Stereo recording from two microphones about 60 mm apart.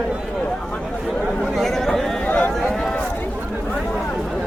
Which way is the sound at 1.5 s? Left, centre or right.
Centre.